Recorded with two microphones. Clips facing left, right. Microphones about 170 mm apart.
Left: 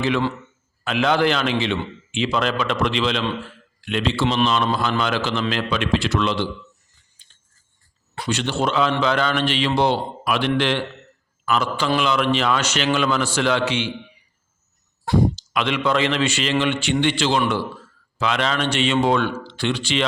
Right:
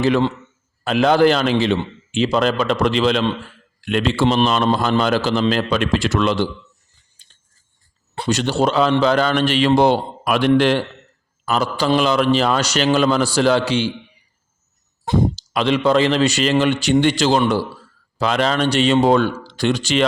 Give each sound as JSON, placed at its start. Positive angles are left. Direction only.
{"t": 0.9, "sound": "a man's voice", "side_deg": -40}
{"t": 7.2, "sound": "a sound", "side_deg": -40}
{"t": 8.3, "sound": "a man's voice", "side_deg": -40}
{"t": 15.0, "sound": "speech", "side_deg": -20}
{"t": 15.4, "sound": "a man's voice", "side_deg": -35}